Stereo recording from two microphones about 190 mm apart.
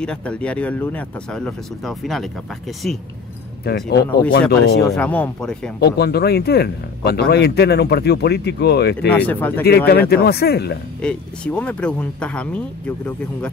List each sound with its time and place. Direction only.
0.0 s speech: 5° left (ahead or behind)
3.6 s speech: 55° left (ahead or behind)
4.8 s speech: 5° left (ahead or behind)
5.8 s speech: 60° left (ahead or behind)
9.1 s speech: 10° left (ahead or behind)
9.8 s speech: 55° left (ahead or behind)
11.0 s speech: 5° left (ahead or behind)